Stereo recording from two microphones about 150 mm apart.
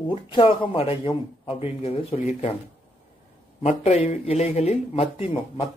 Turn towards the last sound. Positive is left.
turn(degrees=40)  # may be behind; listen again after turning